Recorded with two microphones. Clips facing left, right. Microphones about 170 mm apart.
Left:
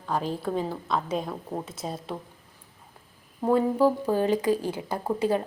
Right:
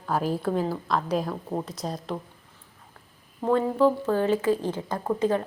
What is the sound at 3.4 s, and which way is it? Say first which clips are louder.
A woman's voice: even; 10° left (ahead or behind).